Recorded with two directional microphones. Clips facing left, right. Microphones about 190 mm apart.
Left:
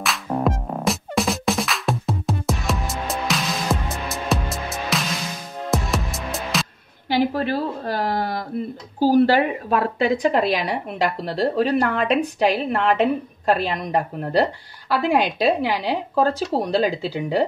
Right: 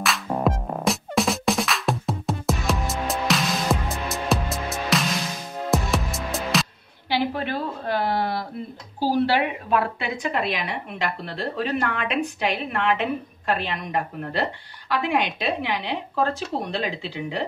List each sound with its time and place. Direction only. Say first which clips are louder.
0.0 s music: left 1 dB; centre (ahead or behind)
7.1 s a sound: left 4 dB; 40° left (ahead or behind)
9.0 s a woman's voice: left 5 dB; 45° left (ahead or behind)